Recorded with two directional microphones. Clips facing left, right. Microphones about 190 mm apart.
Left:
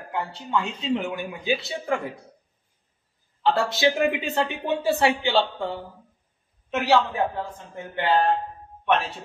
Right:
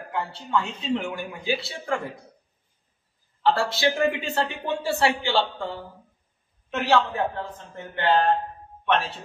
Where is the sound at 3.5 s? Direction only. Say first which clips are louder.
Left 2 dB; 20° left (ahead or behind).